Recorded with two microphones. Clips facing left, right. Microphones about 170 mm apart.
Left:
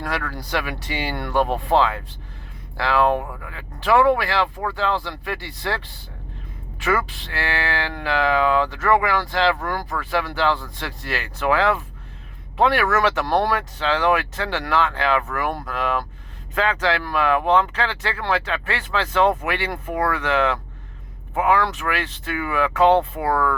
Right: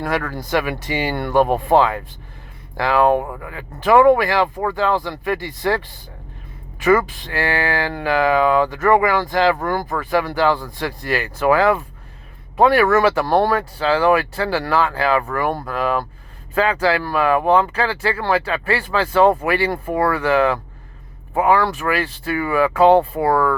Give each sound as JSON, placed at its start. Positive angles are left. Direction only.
{"t": 0.0, "sound": "speech", "side_deg": -45}
{"t": 6.8, "sound": "speech", "side_deg": -45}
{"t": 21.3, "sound": "speech", "side_deg": -35}